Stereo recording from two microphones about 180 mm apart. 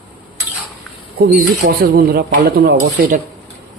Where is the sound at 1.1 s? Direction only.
55° right (ahead or behind).